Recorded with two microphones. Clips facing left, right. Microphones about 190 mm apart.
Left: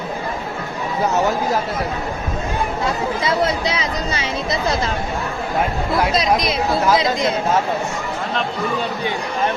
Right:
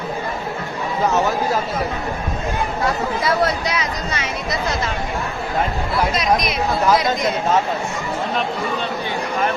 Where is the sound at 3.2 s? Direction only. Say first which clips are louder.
Even; 25° left (ahead or behind).